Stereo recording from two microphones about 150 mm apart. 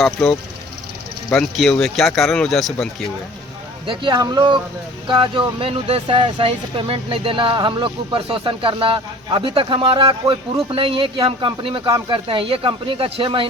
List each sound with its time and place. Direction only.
0.0 s speech: 5° left (ahead or behind)
3.8 s speech: 30° right (ahead or behind)